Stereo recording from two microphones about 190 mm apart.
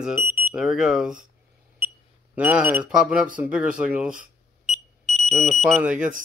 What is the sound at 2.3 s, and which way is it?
Speech, 10° right (ahead or behind).